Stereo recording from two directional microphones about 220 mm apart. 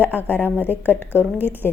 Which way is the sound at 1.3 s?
10° right (ahead or behind).